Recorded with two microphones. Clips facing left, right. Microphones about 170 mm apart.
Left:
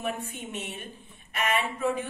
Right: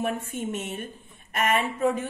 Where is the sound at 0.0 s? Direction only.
45° right (ahead or behind).